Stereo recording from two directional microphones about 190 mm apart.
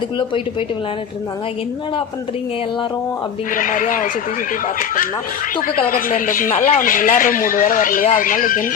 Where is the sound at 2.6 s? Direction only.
25° left (ahead or behind).